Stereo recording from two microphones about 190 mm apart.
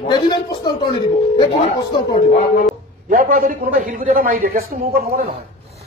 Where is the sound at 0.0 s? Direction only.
20° left (ahead or behind).